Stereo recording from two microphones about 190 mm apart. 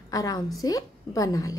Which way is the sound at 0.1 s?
20° left (ahead or behind).